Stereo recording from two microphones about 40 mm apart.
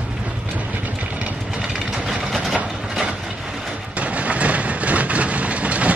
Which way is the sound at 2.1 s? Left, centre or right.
Centre.